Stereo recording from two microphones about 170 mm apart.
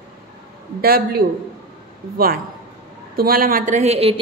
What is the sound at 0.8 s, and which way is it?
Speech, 60° right (ahead or behind).